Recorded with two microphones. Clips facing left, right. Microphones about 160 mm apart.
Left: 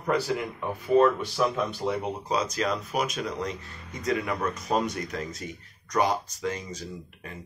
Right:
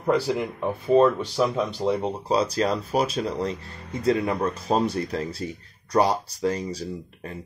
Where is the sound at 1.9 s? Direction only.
30° right (ahead or behind).